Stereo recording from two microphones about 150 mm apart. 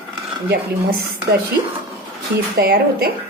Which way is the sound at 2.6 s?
90° right.